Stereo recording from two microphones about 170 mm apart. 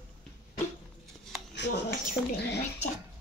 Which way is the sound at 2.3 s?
80° left.